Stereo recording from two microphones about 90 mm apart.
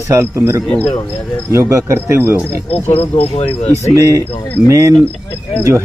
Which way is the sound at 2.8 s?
25° left (ahead or behind).